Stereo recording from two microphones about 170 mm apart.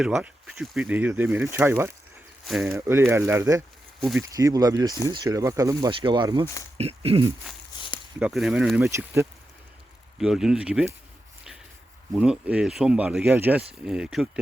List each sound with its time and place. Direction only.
0.0 s speech: 5° right (ahead or behind)
2.5 s speech: centre (ahead or behind)
2.7 s speech: 15° right (ahead or behind); by 7.3 s 35° right (ahead or behind)
8.2 s speech: centre (ahead or behind)
10.2 s speech: 5° right (ahead or behind)
12.1 s speech: 5° right (ahead or behind)